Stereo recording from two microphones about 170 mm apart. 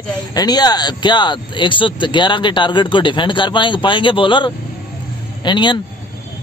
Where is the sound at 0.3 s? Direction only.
25° left (ahead or behind).